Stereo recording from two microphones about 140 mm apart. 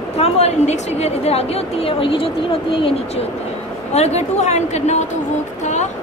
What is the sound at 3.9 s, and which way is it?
A woman's voice, 50° left (ahead or behind).